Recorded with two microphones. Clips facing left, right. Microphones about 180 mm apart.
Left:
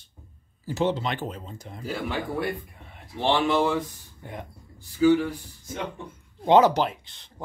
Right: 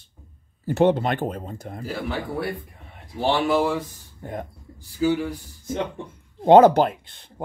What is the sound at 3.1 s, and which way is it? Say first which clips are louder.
Speech: right 2 dB; 5° right (ahead or behind).